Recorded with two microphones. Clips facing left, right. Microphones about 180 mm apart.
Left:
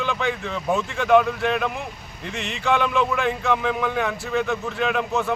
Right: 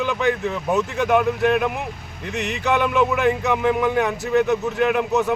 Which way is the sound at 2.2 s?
65° right (ahead or behind).